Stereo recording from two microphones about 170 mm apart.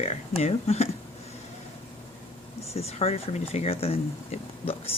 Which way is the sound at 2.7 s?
35° left (ahead or behind).